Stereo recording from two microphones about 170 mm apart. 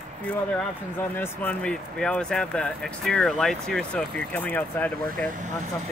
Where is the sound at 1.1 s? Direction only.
10° left (ahead or behind).